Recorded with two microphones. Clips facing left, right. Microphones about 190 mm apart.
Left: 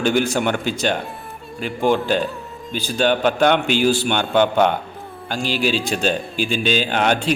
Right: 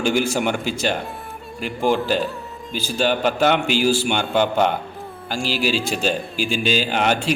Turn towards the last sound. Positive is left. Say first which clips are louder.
# left 1 dB
turn(degrees=-5)  # may be behind; listen again after turning